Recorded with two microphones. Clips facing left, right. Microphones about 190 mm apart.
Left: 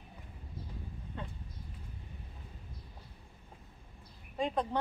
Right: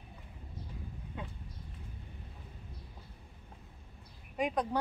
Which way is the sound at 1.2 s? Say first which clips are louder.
Even; 10° right (ahead or behind).